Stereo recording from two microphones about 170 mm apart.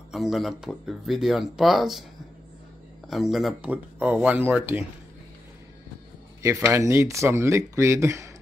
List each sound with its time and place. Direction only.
0.1 s speech: centre (ahead or behind)
3.1 s speech: centre (ahead or behind)
6.4 s speech: 15° right (ahead or behind)